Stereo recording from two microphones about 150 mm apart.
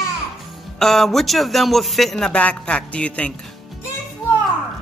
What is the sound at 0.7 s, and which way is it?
A man's voice, centre (ahead or behind).